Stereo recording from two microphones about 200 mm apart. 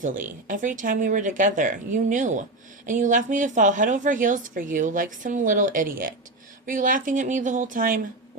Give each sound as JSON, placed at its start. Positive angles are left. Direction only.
{"t": 0.0, "sound": "speech", "side_deg": -40}